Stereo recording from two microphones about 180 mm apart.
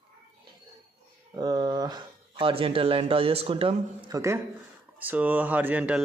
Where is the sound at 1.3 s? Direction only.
25° right (ahead or behind).